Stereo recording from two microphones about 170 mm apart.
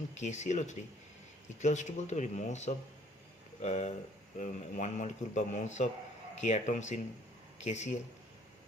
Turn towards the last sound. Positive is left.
turn(degrees=45)  # may be behind; listen again after turning